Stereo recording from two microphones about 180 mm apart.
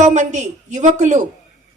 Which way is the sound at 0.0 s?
40° right (ahead or behind).